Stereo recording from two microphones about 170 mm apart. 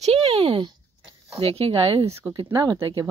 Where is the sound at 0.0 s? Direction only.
35° right (ahead or behind).